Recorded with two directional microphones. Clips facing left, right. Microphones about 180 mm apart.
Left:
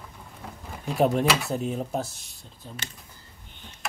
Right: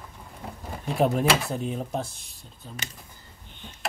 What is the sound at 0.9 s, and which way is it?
Speech, centre (ahead or behind).